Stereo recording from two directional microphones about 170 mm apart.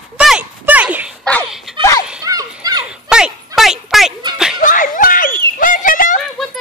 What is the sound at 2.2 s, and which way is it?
Children playing, 20° right (ahead or behind).